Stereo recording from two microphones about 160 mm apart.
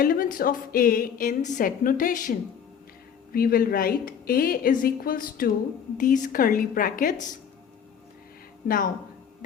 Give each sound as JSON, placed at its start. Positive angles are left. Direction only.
{"t": 0.0, "sound": "a woman's voice", "side_deg": 60}
{"t": 8.6, "sound": "a woman's voice", "side_deg": 65}